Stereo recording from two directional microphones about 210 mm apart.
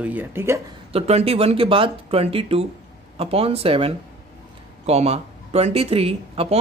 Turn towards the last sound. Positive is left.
turn(degrees=-25)  # may be behind; listen again after turning